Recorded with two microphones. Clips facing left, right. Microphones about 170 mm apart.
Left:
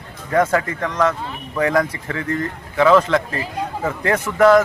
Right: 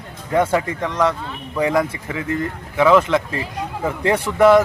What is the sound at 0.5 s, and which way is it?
Speech, 15° right (ahead or behind).